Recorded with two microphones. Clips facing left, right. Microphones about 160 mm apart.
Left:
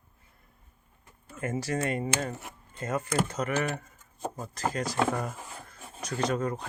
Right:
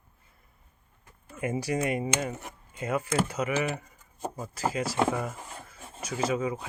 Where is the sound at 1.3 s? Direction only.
10° right (ahead or behind).